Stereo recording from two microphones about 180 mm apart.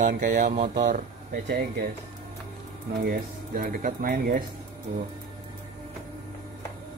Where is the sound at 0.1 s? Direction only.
50° right (ahead or behind).